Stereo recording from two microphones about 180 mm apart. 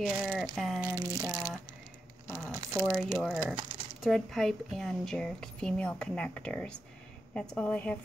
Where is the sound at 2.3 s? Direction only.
15° right (ahead or behind).